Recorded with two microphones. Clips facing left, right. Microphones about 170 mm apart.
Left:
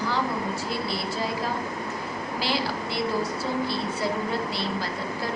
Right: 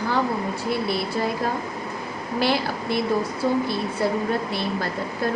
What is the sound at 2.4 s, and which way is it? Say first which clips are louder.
Speech: right 6 dB; 55° right (ahead or behind).